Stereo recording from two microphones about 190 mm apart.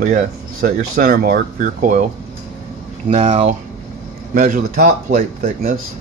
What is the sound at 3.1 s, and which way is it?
Speech, 30° right (ahead or behind).